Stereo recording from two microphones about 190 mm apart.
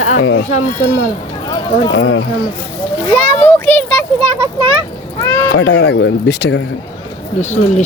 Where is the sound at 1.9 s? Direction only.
65° left (ahead or behind).